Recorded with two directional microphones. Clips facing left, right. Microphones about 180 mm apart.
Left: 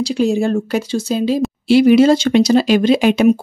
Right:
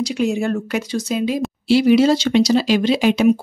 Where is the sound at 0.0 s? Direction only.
30° left (ahead or behind).